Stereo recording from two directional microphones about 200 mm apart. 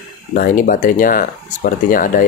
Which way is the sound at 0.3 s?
45° left (ahead or behind).